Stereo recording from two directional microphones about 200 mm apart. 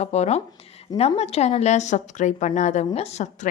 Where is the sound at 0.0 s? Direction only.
35° left (ahead or behind).